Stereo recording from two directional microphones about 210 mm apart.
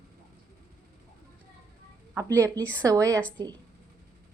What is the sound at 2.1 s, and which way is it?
Speech, 15° right (ahead or behind).